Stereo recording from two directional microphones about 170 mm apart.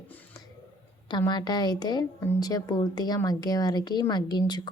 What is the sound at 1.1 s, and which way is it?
Speech, 25° left (ahead or behind).